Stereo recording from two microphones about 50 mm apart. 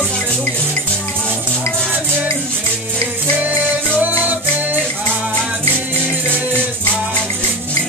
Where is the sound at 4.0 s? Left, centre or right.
Right.